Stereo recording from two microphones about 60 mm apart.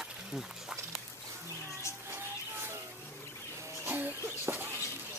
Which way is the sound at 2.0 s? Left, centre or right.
Right.